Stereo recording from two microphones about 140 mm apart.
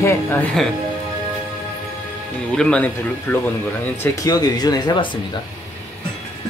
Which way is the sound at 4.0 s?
25° left (ahead or behind).